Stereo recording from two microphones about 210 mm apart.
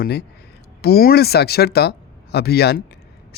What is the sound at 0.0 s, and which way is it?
A man's voice, 50° left (ahead or behind).